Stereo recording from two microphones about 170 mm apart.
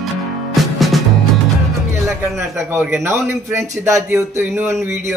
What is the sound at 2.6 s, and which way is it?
A man's voice, 15° right (ahead or behind).